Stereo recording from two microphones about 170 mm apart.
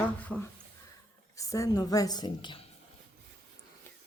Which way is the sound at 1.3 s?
20° left (ahead or behind).